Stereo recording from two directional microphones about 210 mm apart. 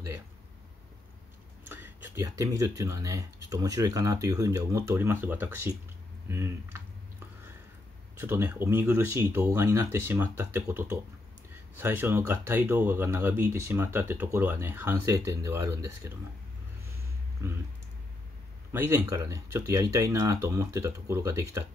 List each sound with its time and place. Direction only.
1.6 s speech: 10° right (ahead or behind)
8.2 s speech: 10° right (ahead or behind)
17.4 s speech: 15° right (ahead or behind)
18.7 s speech: 10° right (ahead or behind)